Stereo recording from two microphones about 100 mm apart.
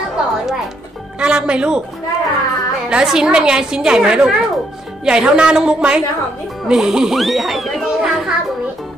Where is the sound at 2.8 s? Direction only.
5° right (ahead or behind).